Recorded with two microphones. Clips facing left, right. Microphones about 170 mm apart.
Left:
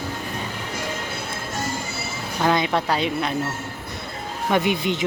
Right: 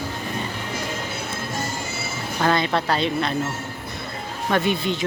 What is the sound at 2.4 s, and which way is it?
Speech, 10° left (ahead or behind).